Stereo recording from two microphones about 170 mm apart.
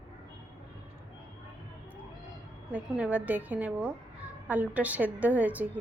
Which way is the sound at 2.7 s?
10° right (ahead or behind).